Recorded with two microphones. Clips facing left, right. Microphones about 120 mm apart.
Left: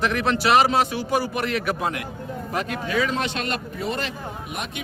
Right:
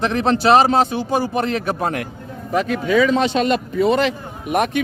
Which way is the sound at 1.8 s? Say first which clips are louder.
Right 5 dB; 45° right (ahead or behind).